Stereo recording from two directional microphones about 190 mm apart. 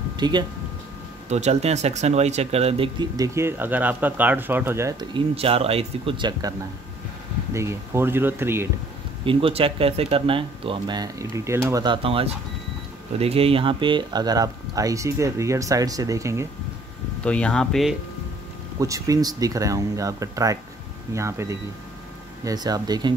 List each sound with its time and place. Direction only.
0.2 s speech: 25° right (ahead or behind)
1.3 s speech: 35° right (ahead or behind)
7.5 s speech: 15° right (ahead or behind)
9.2 s speech: 30° right (ahead or behind)
17.2 s speech: 5° left (ahead or behind)
18.8 s speech: 20° right (ahead or behind)